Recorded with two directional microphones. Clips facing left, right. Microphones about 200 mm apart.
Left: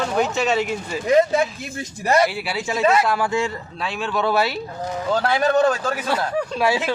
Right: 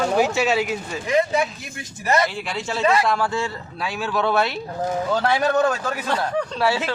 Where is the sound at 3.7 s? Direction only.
Centre (ahead or behind).